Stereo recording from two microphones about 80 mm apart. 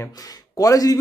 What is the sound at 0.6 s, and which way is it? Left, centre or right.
Speech, left.